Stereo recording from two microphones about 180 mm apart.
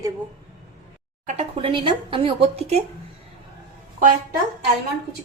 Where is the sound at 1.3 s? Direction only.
35° right (ahead or behind).